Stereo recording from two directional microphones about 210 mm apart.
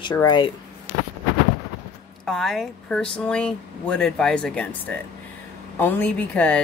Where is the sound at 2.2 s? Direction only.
Centre (ahead or behind).